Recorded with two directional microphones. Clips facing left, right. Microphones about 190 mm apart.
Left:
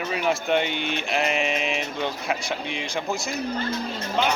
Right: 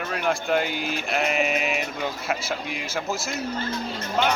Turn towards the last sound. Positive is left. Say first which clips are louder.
# even
turn(degrees=-5)  # may be behind; listen again after turning